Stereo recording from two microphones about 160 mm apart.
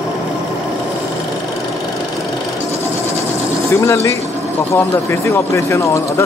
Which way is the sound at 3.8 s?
20° left (ahead or behind).